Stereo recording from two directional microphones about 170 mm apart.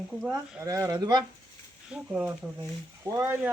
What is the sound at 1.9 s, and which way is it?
Speech, 5° right (ahead or behind).